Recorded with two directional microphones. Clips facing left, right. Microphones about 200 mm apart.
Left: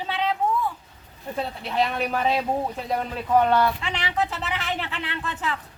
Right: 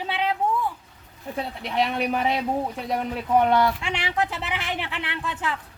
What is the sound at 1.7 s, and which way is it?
Speech, 15° right (ahead or behind).